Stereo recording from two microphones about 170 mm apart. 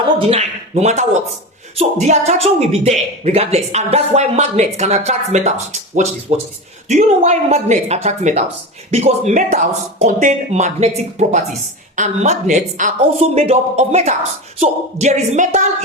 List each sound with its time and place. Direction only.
0.2 s speech: 40° right (ahead or behind)